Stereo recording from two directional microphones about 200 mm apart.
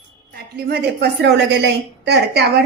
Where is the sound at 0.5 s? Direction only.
50° right (ahead or behind).